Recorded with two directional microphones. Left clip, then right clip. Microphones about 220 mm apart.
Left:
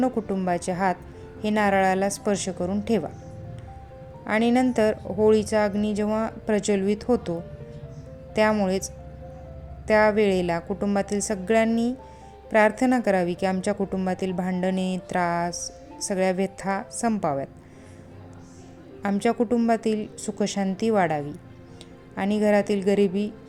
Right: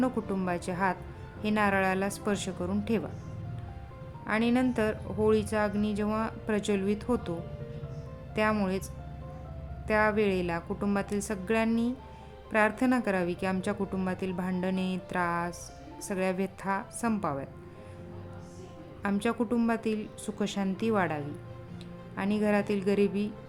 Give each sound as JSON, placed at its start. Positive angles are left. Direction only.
{"t": 0.0, "sound": "speech", "side_deg": 10}
{"t": 4.3, "sound": "speech", "side_deg": 20}
{"t": 8.4, "sound": "speech", "side_deg": 15}
{"t": 9.8, "sound": "speech", "side_deg": 15}
{"t": 15.5, "sound": "music", "side_deg": 0}
{"t": 16.0, "sound": "speech", "side_deg": 15}
{"t": 19.0, "sound": "speech", "side_deg": 15}